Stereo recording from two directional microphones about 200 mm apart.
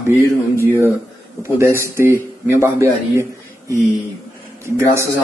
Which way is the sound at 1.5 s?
15° right (ahead or behind).